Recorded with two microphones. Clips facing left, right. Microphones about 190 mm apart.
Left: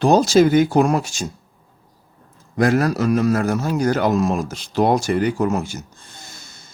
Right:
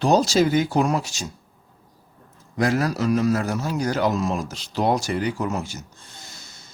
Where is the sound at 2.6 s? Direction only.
55° left (ahead or behind).